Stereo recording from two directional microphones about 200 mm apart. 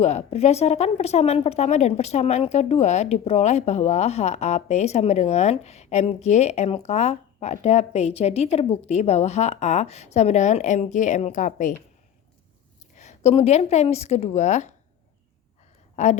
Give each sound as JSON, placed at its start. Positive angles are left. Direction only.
{"t": 0.0, "sound": "speech", "side_deg": 35}
{"t": 13.0, "sound": "speech", "side_deg": 35}
{"t": 16.0, "sound": "a woman's voice", "side_deg": 35}